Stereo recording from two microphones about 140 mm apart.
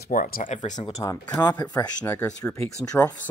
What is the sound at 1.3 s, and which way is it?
Speech, 15° left (ahead or behind).